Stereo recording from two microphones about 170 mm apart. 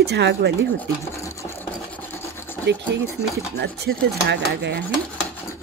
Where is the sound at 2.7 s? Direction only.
90° right.